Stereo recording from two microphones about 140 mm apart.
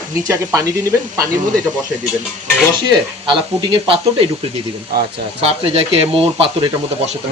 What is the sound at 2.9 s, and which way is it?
Speech, 40° right (ahead or behind).